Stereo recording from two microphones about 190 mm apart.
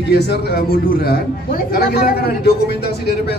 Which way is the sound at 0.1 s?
55° left (ahead or behind).